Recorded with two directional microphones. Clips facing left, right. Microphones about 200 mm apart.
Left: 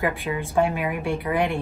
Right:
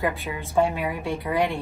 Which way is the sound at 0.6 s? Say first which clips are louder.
Even; 20° left (ahead or behind).